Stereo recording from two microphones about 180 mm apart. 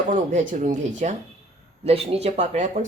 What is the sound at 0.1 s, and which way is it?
Speech, 45° right (ahead or behind).